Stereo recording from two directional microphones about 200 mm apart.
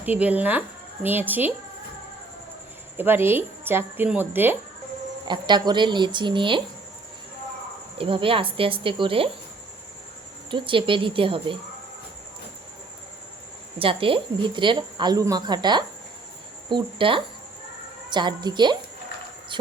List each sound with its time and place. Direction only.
0.0 s speech: 10° right (ahead or behind)
3.0 s speech: 10° right (ahead or behind)
5.3 s a woman's voice: 20° right (ahead or behind)
7.9 s a woman's voice: 25° right (ahead or behind)
10.5 s a woman's voice: 25° right (ahead or behind)
13.7 s a woman's voice: 25° right (ahead or behind)